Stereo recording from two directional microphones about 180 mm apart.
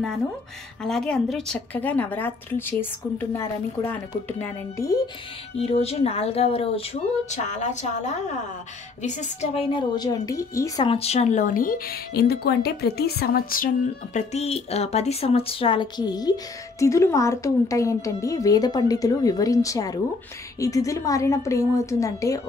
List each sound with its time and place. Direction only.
0.8 s a woman's voice: 5° left (ahead or behind); by 5.1 s 20° left (ahead or behind)
5.6 s a woman's voice: 35° left (ahead or behind); by 10.9 s 15° left (ahead or behind)
10.9 s speech: 35° left (ahead or behind); by 13.7 s 55° left (ahead or behind)
14.1 s a woman's voice: 35° left (ahead or behind); by 22.4 s 20° left (ahead or behind)